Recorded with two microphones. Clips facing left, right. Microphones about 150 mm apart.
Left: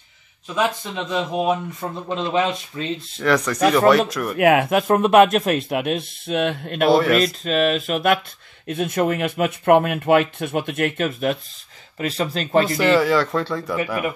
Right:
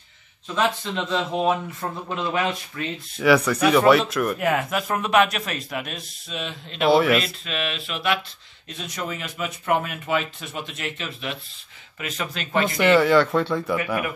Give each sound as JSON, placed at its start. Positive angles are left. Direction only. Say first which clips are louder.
{"t": 0.9, "sound": "speech", "louder": "left 1 dB", "side_deg": 15}
{"t": 3.2, "sound": "speech", "louder": "right 1 dB", "side_deg": -5}
{"t": 4.4, "sound": "speech", "louder": "left 7 dB", "side_deg": 70}
{"t": 5.7, "sound": "speech", "louder": "left 9 dB", "side_deg": 55}
{"t": 6.9, "sound": "speech", "louder": "left 1 dB", "side_deg": 0}
{"t": 7.4, "sound": "speech", "louder": "left 10 dB", "side_deg": 40}
{"t": 12.0, "sound": "speech", "louder": "left 7 dB", "side_deg": 35}
{"t": 12.7, "sound": "speech", "louder": "right 4 dB", "side_deg": 0}